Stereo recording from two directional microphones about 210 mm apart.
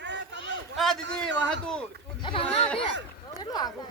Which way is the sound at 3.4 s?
20° left (ahead or behind).